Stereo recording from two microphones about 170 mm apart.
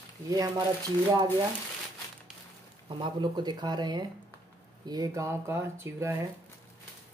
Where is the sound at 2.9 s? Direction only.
25° right (ahead or behind).